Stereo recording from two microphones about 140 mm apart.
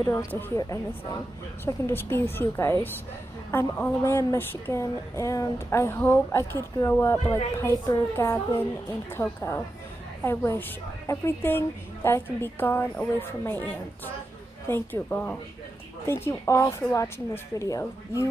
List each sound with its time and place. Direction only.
0.0 s a woman's voice: 20° left (ahead or behind)
1.6 s a woman's voice: 15° left (ahead or behind)
14.7 s a woman's voice: 15° left (ahead or behind)